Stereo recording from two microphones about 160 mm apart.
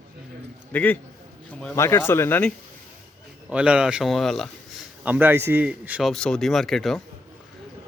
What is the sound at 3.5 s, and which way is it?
Speech, 5° right (ahead or behind).